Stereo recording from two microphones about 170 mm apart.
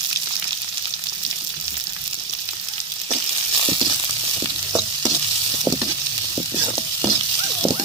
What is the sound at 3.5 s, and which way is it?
Frying, 30° right (ahead or behind).